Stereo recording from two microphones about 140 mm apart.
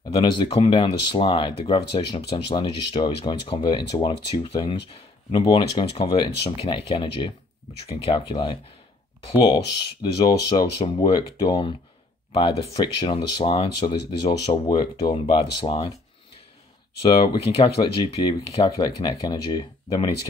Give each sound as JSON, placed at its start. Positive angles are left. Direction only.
{"t": 0.1, "sound": "speech", "side_deg": 35}
{"t": 10.1, "sound": "speech", "side_deg": 30}
{"t": 17.0, "sound": "speech", "side_deg": 35}